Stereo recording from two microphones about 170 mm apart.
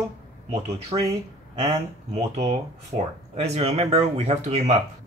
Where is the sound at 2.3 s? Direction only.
40° right (ahead or behind).